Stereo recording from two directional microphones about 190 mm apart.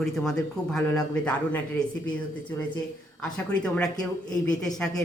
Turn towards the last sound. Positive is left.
turn(degrees=5)  # may be behind; listen again after turning